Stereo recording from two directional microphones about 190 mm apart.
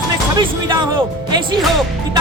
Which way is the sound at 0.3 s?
25° right (ahead or behind).